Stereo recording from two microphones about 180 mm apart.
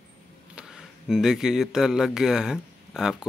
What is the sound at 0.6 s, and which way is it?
Speech, 5° right (ahead or behind).